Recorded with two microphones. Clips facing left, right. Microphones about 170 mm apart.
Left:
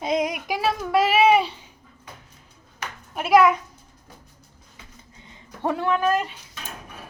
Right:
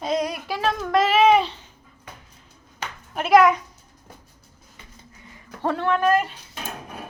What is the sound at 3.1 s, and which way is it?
Speech, 5° left (ahead or behind).